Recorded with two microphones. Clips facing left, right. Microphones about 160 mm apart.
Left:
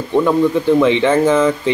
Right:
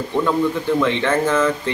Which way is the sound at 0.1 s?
20° left (ahead or behind).